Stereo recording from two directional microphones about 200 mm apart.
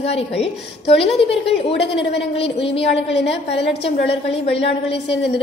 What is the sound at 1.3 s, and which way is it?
Speech, 60° left (ahead or behind).